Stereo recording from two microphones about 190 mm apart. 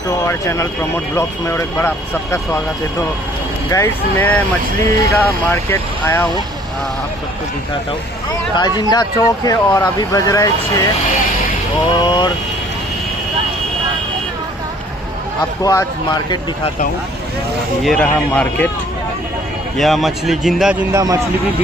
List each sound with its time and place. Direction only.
0.3 s speech: 15° left (ahead or behind)
8.5 s speech: 20° left (ahead or behind)
12.0 s speech: 20° left (ahead or behind)
15.6 s speech: 15° left (ahead or behind)
17.8 s speech: 5° left (ahead or behind)
19.8 s a man's voice: centre (ahead or behind)
20.9 s speech: 20° right (ahead or behind)